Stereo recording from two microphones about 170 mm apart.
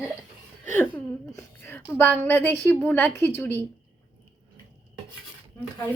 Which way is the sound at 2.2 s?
10° left (ahead or behind).